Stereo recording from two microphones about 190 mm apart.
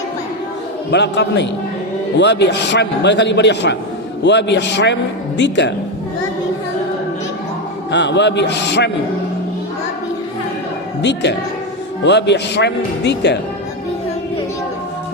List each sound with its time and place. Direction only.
0.9 s a man's voice: 65° left (ahead or behind)
7.9 s a man's voice: 65° left (ahead or behind)
11.0 s a man's voice: 65° left (ahead or behind)